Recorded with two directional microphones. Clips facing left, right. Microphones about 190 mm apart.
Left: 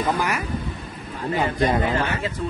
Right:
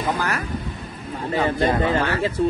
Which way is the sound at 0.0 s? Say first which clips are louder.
Left 1 dB; 10° left (ahead or behind).